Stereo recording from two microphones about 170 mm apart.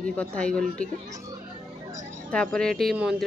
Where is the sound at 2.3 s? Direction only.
5° left (ahead or behind).